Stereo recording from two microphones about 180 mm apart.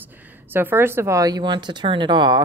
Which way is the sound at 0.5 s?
10° right (ahead or behind).